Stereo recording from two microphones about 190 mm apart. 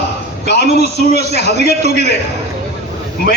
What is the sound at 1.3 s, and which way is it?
Speech, 35° right (ahead or behind).